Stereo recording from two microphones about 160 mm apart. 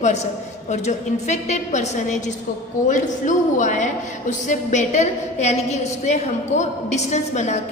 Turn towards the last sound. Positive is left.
turn(degrees=45)  # may be behind; listen again after turning